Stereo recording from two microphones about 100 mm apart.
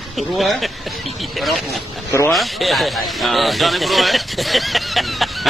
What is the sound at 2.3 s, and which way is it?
Speech, centre (ahead or behind).